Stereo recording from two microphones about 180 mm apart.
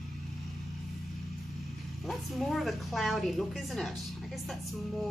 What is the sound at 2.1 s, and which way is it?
A woman's voice, centre (ahead or behind).